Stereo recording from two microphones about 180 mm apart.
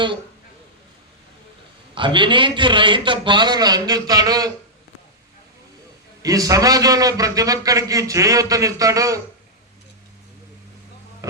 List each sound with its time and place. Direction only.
2.0 s a man's voice: 25° right (ahead or behind)
6.2 s a man's voice: 20° right (ahead or behind)